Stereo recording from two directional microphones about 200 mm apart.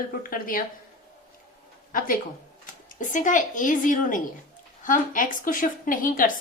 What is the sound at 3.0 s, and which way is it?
A woman's voice, 40° left (ahead or behind).